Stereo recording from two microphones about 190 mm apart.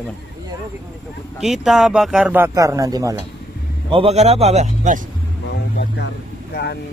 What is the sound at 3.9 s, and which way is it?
Speech, 30° right (ahead or behind).